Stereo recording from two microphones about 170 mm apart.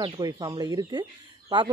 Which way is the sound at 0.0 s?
25° right (ahead or behind).